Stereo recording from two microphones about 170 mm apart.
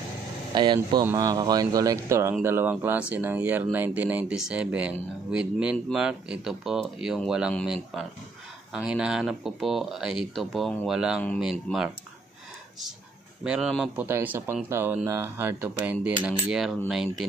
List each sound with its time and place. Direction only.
0.5 s speech: 25° right (ahead or behind); by 11.2 s 5° right (ahead or behind)
11.7 s speech: 10° left (ahead or behind)
13.4 s speech: 5° right (ahead or behind)
13.9 s speech: 10° right (ahead or behind)